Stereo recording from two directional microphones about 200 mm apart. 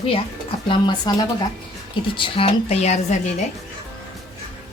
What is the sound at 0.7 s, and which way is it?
A woman's voice, 20° left (ahead or behind).